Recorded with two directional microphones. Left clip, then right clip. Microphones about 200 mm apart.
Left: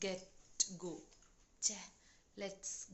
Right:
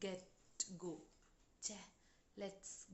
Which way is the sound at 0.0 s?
10° right (ahead or behind).